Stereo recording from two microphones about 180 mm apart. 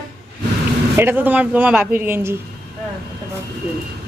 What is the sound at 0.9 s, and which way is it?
Speech, 10° right (ahead or behind).